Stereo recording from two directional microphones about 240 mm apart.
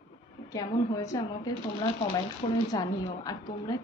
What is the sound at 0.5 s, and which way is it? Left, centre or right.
A woman's voice, centre.